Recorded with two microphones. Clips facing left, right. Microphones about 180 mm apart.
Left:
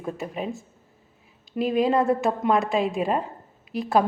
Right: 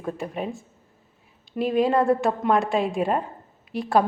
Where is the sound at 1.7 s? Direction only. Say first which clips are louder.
Right 1 dB; 15° left (ahead or behind).